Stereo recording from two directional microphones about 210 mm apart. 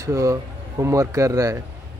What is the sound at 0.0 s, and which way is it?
Speech, 15° right (ahead or behind).